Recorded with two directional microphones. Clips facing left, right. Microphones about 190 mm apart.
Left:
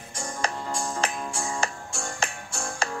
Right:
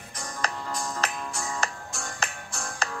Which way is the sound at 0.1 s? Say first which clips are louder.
Left 3 dB; 30° left (ahead or behind).